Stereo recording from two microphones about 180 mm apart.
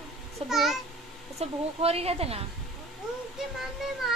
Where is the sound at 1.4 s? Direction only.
35° right (ahead or behind).